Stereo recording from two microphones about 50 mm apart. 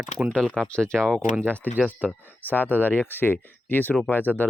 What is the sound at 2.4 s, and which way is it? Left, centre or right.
Speech, left.